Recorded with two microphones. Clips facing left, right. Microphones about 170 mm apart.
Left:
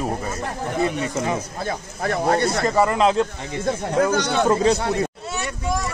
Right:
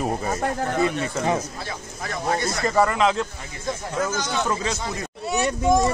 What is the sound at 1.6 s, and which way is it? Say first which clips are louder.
Speech: left 7 dB; 50° left (ahead or behind).